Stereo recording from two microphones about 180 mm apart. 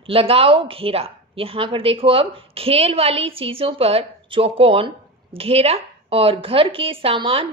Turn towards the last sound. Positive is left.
turn(degrees=-30)  # may be behind; listen again after turning